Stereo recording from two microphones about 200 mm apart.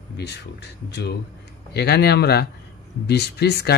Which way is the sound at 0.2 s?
60° left (ahead or behind).